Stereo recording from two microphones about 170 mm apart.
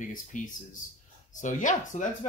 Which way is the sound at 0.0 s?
50° left (ahead or behind).